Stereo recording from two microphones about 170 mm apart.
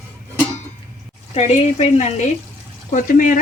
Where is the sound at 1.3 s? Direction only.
40° left (ahead or behind).